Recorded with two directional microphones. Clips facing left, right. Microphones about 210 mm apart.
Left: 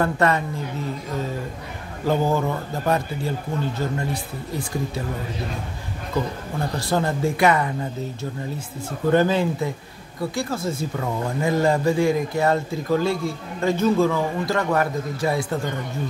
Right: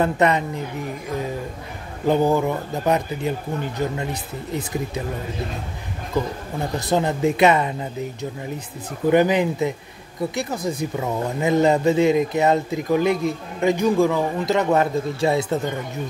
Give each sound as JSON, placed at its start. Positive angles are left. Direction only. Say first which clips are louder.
{"t": 0.0, "sound": "speech", "louder": "right 2 dB", "side_deg": -20}
{"t": 6.8, "sound": "speech", "louder": "right 3 dB", "side_deg": -20}
{"t": 9.1, "sound": "speech", "louder": "right 2 dB", "side_deg": -15}